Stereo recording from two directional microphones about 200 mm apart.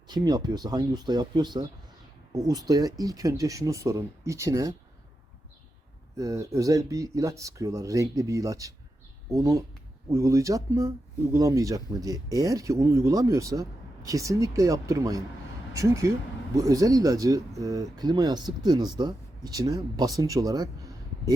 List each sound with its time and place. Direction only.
0.1 s speech: 20° right (ahead or behind)
6.1 s speech: 15° right (ahead or behind)